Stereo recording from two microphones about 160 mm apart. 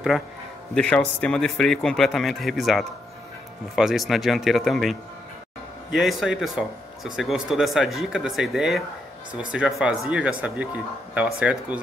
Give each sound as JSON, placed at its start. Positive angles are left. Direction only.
{"t": 0.7, "sound": "speech", "side_deg": 5}